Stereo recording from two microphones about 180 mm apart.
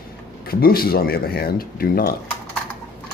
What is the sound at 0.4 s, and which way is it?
Speech, 55° left (ahead or behind).